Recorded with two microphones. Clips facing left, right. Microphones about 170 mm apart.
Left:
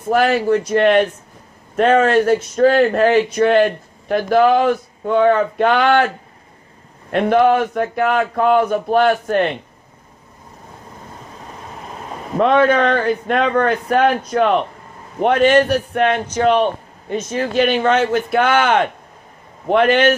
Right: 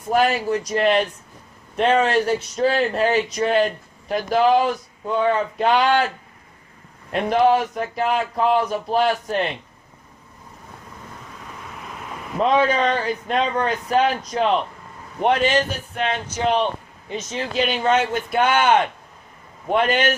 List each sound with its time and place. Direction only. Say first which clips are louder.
0.1 s speech: left 4 dB; 50° left (ahead or behind)
11.3 s vehicle: left 4 dB; 35° left (ahead or behind)
12.4 s speech: left 5 dB; 60° left (ahead or behind)